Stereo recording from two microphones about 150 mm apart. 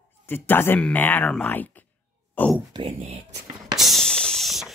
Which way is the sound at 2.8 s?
40° right (ahead or behind).